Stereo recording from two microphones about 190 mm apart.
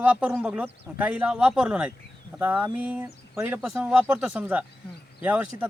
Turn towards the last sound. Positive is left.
turn(degrees=-5)  # may be behind; listen again after turning